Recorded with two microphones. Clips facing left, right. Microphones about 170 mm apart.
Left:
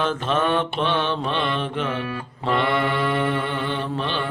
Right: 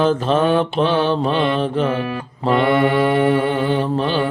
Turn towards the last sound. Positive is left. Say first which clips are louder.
# right 7 dB
turn(degrees=-40)  # may be behind; listen again after turning